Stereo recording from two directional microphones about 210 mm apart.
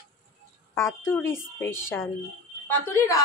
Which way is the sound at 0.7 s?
10° left (ahead or behind).